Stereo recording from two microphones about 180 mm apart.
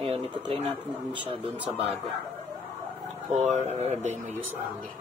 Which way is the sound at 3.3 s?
40° right (ahead or behind).